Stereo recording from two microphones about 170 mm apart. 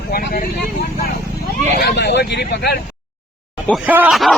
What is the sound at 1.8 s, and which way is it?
Vehicle, 80° left.